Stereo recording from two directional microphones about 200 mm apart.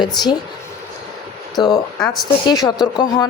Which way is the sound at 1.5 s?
20° left (ahead or behind).